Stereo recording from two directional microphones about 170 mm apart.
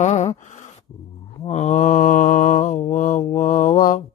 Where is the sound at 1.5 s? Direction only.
45° left (ahead or behind).